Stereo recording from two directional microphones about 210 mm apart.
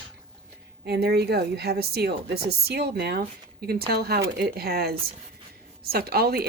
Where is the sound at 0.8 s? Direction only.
50° right (ahead or behind).